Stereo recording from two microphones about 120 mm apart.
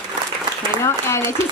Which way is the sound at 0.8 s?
20° left (ahead or behind).